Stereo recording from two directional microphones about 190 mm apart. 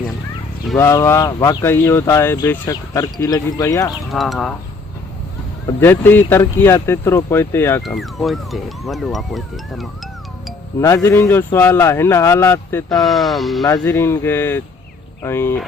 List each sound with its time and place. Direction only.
0.8 s speech: 15° left (ahead or behind)
4.1 s speech: centre (ahead or behind)
5.6 s speech: 10° left (ahead or behind)
7.8 s speech: centre (ahead or behind)
10.8 s speech: 15° left (ahead or behind)
13.1 s speech: centre (ahead or behind)
13.9 s speech: 15° left (ahead or behind)